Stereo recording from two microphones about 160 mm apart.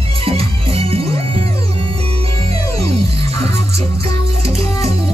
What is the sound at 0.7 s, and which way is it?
Music, 35° right (ahead or behind).